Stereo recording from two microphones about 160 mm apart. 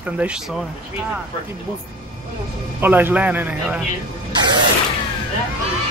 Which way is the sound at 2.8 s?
10° right (ahead or behind).